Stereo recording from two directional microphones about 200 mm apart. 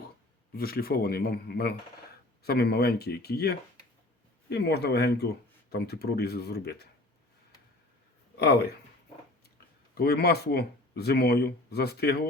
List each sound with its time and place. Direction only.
0.5 s speech: 50° left (ahead or behind)
8.4 s speech: 55° left (ahead or behind)
9.9 s speech: 50° left (ahead or behind)